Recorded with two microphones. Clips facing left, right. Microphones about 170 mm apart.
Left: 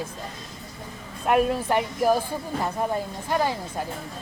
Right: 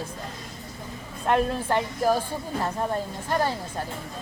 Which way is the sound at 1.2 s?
10° left (ahead or behind).